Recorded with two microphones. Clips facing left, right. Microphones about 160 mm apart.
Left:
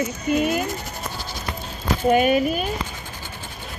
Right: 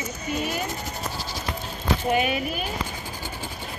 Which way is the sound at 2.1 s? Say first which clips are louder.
Left 7 dB; 45° left (ahead or behind).